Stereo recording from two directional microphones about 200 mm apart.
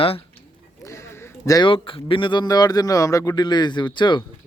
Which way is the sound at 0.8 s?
15° left (ahead or behind).